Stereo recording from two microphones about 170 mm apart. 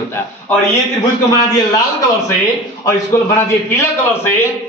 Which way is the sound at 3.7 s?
15° left (ahead or behind).